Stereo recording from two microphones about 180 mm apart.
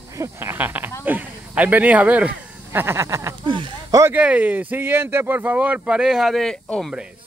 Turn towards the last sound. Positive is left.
turn(degrees=0)  # may be behind; listen again after turning